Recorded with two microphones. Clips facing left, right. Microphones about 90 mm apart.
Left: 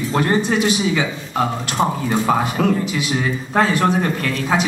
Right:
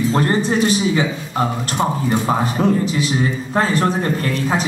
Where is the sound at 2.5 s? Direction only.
35° right (ahead or behind).